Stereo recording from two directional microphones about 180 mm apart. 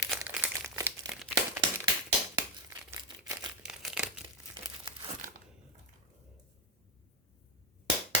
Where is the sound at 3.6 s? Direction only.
5° right (ahead or behind).